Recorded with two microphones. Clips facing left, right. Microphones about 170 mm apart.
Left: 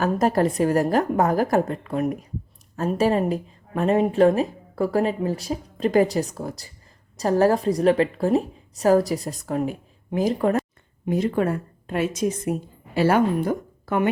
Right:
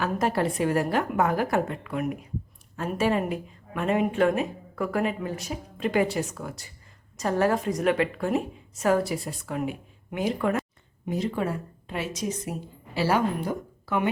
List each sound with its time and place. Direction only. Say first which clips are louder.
0.0 s speech: left 5 dB; 40° left (ahead or behind)
11.1 s a woman's voice: left 6 dB; 55° left (ahead or behind)